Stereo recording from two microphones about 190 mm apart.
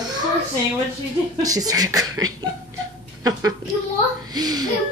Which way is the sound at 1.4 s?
20° right (ahead or behind).